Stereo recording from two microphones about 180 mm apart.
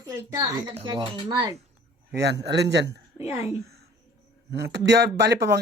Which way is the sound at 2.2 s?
70° right (ahead or behind).